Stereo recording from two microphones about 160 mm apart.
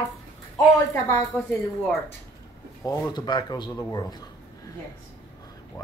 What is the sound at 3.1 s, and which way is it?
Speech, 25° left (ahead or behind).